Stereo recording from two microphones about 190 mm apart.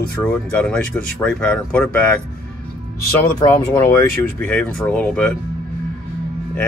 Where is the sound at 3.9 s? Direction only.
10° left (ahead or behind).